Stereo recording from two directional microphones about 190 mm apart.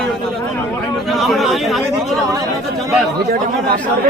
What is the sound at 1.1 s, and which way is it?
Speech, centre (ahead or behind).